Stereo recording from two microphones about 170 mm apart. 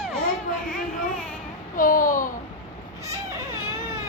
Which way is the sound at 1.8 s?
55° left (ahead or behind).